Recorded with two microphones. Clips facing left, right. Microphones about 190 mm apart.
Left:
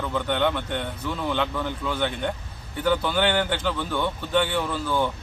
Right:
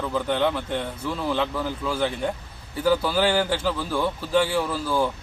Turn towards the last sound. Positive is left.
turn(degrees=-5)  # may be behind; listen again after turning